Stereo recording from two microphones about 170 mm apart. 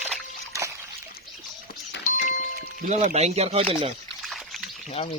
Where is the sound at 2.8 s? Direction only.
50° right (ahead or behind).